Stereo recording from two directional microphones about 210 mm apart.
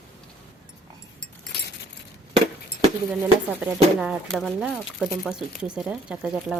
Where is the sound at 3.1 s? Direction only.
5° right (ahead or behind).